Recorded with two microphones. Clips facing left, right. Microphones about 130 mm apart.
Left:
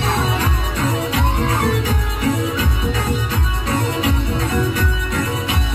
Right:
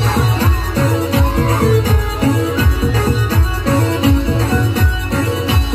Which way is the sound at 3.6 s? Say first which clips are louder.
Right 6 dB; 30° right (ahead or behind).